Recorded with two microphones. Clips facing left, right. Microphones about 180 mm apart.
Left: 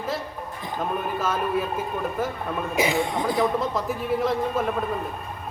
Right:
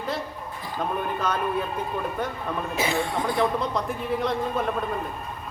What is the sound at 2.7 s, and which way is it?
Speech, 15° left (ahead or behind).